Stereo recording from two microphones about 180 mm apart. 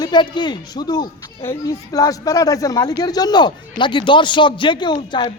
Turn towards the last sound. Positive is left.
turn(degrees=25)  # may be behind; listen again after turning